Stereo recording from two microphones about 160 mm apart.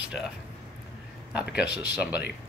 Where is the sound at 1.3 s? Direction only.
10° right (ahead or behind).